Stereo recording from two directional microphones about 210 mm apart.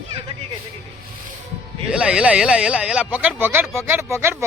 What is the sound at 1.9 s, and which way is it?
Speech, 5° right (ahead or behind).